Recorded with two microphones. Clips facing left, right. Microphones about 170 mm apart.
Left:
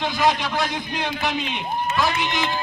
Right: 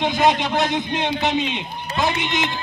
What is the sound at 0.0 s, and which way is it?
A man's voice, 20° right (ahead or behind).